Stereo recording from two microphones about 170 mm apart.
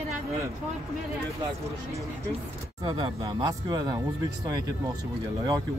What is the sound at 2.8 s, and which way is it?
Speech, 25° right (ahead or behind).